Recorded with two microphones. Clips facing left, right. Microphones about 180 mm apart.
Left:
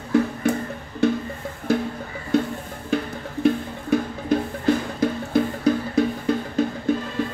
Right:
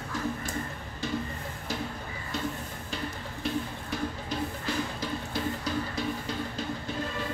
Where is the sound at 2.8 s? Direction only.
55° left (ahead or behind).